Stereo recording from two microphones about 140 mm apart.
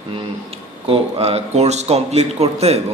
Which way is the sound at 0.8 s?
40° right (ahead or behind).